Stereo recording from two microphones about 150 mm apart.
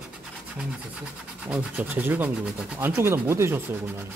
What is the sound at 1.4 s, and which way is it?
Speech, 10° right (ahead or behind).